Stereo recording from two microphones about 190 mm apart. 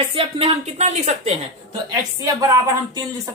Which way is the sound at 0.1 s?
30° right (ahead or behind).